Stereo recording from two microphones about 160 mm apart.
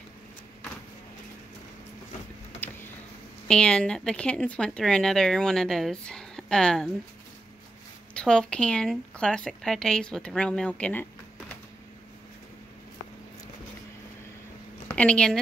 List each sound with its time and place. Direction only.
3.4 s speech: 5° left (ahead or behind)
8.2 s speech: 5° left (ahead or behind)
14.9 s speech: 10° left (ahead or behind)